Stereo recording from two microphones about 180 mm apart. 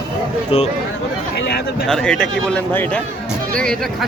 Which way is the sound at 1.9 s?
5° left (ahead or behind).